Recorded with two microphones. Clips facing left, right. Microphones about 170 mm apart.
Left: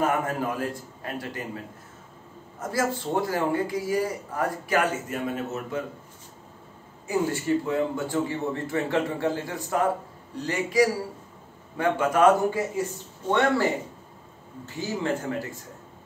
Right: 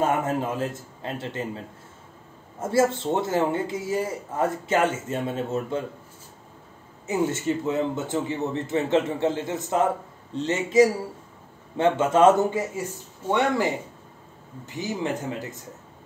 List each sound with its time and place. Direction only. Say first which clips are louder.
0.0 s a man's voice: right 2 dB; 25° right (ahead or behind)
2.6 s a man's voice: right 5 dB; 25° right (ahead or behind)
7.1 s a man's voice: even; 25° right (ahead or behind)
14.8 s a man's voice: even; 20° right (ahead or behind)